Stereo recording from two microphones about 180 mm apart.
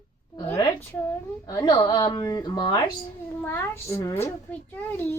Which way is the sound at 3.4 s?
10° left (ahead or behind).